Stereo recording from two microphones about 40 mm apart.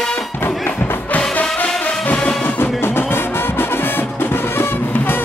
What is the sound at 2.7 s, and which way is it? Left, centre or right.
Music, left.